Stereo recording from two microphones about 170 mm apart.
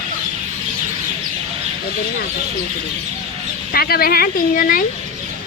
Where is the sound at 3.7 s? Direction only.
65° left (ahead or behind).